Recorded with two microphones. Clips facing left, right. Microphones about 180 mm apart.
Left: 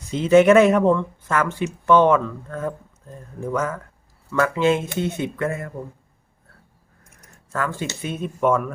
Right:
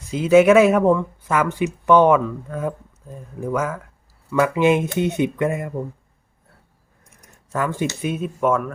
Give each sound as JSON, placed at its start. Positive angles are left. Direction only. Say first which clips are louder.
{"t": 0.1, "sound": "speech", "louder": "right 1 dB", "side_deg": -5}
{"t": 7.5, "sound": "speech", "louder": "right 3 dB", "side_deg": -15}